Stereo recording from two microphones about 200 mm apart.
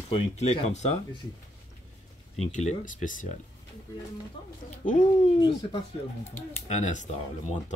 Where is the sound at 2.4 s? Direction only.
35° left (ahead or behind).